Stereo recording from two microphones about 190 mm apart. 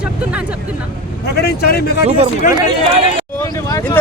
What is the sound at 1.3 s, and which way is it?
Speech, 55° left (ahead or behind).